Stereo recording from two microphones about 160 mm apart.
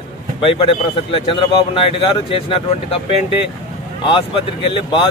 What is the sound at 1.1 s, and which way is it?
Speech, 30° left (ahead or behind).